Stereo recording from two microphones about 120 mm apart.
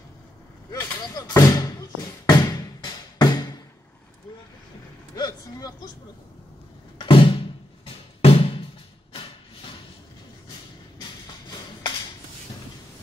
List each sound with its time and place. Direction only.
0.7 s a sound: 30° left (ahead or behind)
5.1 s speech: 30° left (ahead or behind)
7.0 s music: 45° left (ahead or behind)